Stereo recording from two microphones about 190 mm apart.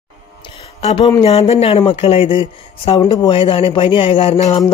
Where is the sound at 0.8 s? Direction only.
30° left (ahead or behind).